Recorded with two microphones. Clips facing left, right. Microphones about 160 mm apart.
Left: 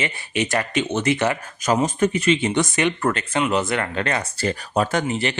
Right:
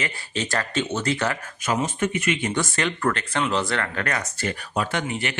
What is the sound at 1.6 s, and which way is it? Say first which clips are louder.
Speech: left 5 dB; 40° left (ahead or behind).